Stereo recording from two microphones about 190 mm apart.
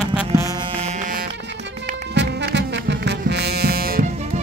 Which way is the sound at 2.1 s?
65° right (ahead or behind).